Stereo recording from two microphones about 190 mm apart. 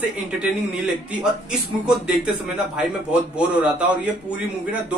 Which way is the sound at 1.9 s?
5° right (ahead or behind).